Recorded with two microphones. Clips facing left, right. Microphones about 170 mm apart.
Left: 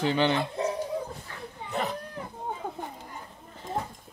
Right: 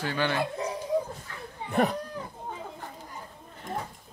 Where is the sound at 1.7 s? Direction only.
55° right (ahead or behind).